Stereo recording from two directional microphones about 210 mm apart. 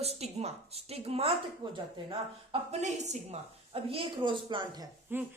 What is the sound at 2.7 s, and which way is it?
Speech, 35° right (ahead or behind).